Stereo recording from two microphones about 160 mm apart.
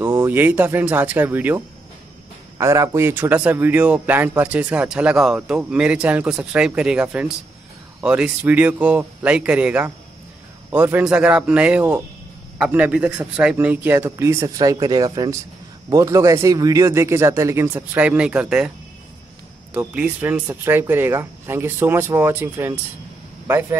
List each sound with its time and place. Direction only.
0.0 s speech: 15° right (ahead or behind)
2.6 s speech: 20° right (ahead or behind)
19.7 s a man's voice: 10° right (ahead or behind)